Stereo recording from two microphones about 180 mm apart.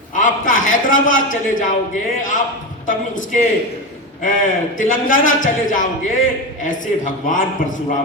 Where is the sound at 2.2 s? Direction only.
45° left (ahead or behind).